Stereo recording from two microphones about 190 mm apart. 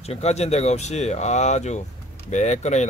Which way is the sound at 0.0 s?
35° left (ahead or behind).